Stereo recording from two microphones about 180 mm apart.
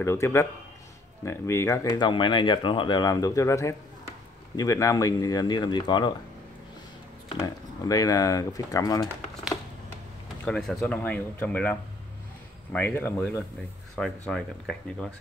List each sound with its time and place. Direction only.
0.0 s speech: 15° left (ahead or behind)
7.4 s speech: 20° left (ahead or behind)
10.4 s speech: 5° left (ahead or behind)